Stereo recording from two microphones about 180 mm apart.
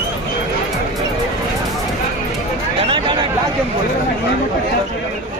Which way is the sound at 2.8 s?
30° right (ahead or behind).